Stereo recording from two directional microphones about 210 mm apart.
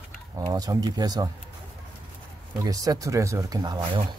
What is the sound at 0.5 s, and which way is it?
Speech, 15° right (ahead or behind).